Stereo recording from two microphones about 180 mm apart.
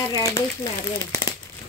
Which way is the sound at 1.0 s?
20° left (ahead or behind).